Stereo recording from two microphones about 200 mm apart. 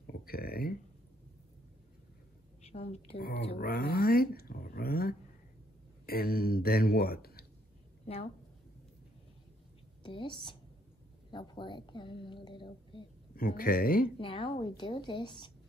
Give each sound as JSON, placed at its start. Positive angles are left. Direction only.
{"t": 0.0, "sound": "a sound", "side_deg": 50}
{"t": 2.6, "sound": "a woman's voice", "side_deg": 30}
{"t": 3.5, "sound": "speech", "side_deg": 50}
{"t": 8.0, "sound": "a woman's voice", "side_deg": 30}
{"t": 10.0, "sound": "a woman's voice", "side_deg": 25}
{"t": 13.4, "sound": "speech", "side_deg": 45}
{"t": 14.1, "sound": "a woman's voice", "side_deg": 25}